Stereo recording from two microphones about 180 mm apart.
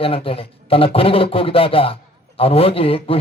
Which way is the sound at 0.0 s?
30° left (ahead or behind).